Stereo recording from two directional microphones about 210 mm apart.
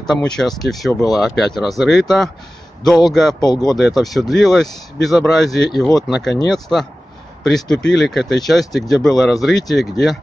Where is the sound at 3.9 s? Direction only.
Centre (ahead or behind).